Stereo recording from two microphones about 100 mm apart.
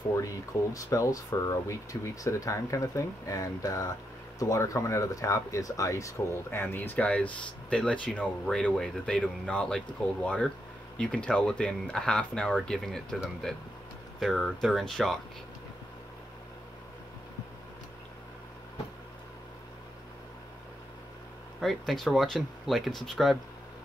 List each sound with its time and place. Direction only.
0.2 s speech: 30° left (ahead or behind); by 13.2 s 5° left (ahead or behind)
14.2 s speech: 5° left (ahead or behind)
21.5 s speech: centre (ahead or behind)